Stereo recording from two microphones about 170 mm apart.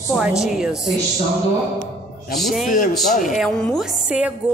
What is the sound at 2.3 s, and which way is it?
Speech, centre (ahead or behind).